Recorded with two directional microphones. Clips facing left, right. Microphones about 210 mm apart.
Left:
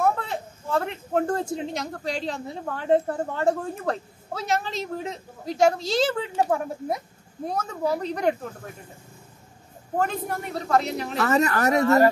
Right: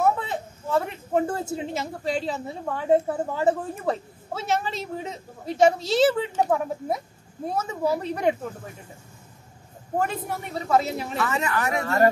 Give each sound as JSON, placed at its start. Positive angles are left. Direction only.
{"t": 0.0, "sound": "speech", "side_deg": -5}
{"t": 9.9, "sound": "speech", "side_deg": -5}
{"t": 11.1, "sound": "speech", "side_deg": 40}